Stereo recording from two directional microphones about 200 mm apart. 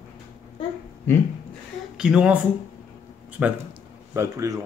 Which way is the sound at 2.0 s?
5° right (ahead or behind).